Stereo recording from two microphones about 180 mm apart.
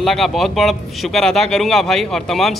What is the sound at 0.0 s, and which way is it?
A man's voice, centre (ahead or behind).